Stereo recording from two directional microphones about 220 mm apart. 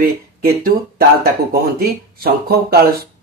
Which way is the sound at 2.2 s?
45° right (ahead or behind).